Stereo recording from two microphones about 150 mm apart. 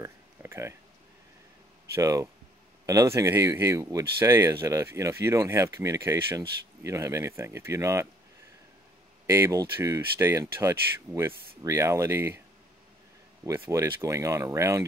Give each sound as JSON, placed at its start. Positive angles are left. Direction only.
{"t": 0.0, "sound": "a sound", "side_deg": -15}
{"t": 2.0, "sound": "speech", "side_deg": -20}
{"t": 9.3, "sound": "speech", "side_deg": -20}
{"t": 13.5, "sound": "speech", "side_deg": -20}